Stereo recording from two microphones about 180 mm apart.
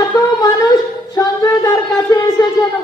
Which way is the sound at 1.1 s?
20° left (ahead or behind).